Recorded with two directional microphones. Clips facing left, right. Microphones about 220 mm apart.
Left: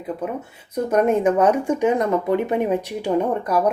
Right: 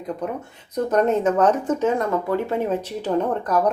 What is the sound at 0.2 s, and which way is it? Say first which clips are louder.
Speech: left 1 dB; 5° left (ahead or behind).